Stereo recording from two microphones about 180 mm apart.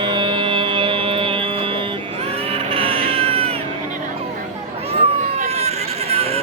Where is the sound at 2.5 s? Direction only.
30° right (ahead or behind).